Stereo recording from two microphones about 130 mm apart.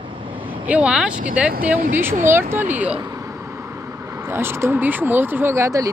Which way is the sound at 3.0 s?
25° right (ahead or behind).